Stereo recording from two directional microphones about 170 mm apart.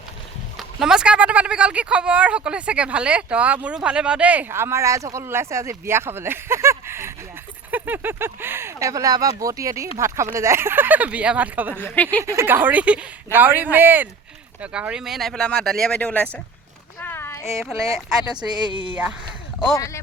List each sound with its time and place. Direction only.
0.5 s speech: 5° right (ahead or behind)
11.7 s speech: 10° left (ahead or behind)
12.2 s speech: 15° right (ahead or behind); by 16.3 s 10° left (ahead or behind)
17.0 s a sound: 15° left (ahead or behind)
18.3 s speech: 25° right (ahead or behind)
19.7 s speech: 20° left (ahead or behind)